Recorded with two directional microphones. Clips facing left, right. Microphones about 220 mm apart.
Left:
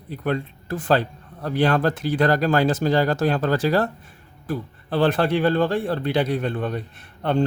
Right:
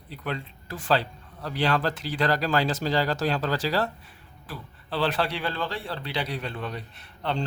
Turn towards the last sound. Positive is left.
turn(degrees=50)  # may be behind; listen again after turning